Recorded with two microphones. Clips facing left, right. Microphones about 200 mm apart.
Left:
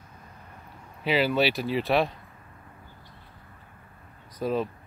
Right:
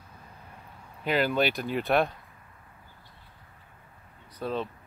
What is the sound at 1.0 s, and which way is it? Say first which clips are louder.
Speech: left 2 dB; 5° left (ahead or behind).